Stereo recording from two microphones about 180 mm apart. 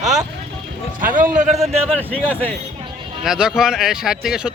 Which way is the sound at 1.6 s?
Centre (ahead or behind).